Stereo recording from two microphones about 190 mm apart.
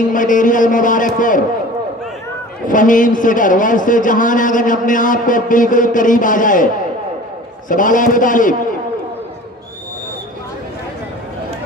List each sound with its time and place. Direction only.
0.1 s a man's voice: 45° left (ahead or behind)
2.7 s a man's voice: 45° left (ahead or behind)